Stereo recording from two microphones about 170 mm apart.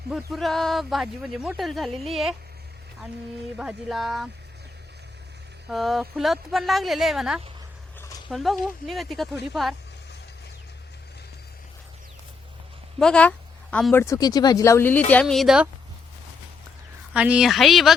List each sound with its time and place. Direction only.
0.1 s speech: centre (ahead or behind)
3.6 s speech: 5° right (ahead or behind)
5.6 s speech: centre (ahead or behind)
13.0 s a woman's voice: 5° left (ahead or behind)
14.0 s speech: 20° left (ahead or behind); by 15.7 s 5° right (ahead or behind)
17.2 s speech: 5° right (ahead or behind)